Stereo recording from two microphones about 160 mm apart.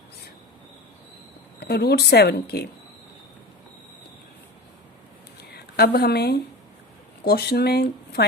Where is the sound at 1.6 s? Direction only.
85° left.